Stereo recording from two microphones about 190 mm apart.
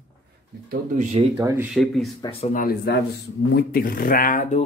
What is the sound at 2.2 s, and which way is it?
Speech, 30° left (ahead or behind).